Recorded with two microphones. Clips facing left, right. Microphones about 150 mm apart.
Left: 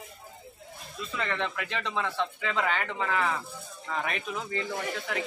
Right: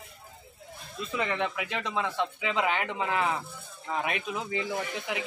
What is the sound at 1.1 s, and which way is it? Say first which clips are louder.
Speech: right 2 dB; 15° right (ahead or behind).